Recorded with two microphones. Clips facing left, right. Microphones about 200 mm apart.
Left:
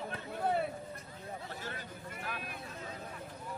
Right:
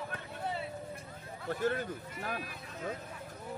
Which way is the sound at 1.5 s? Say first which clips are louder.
Right 11 dB; 50° right (ahead or behind).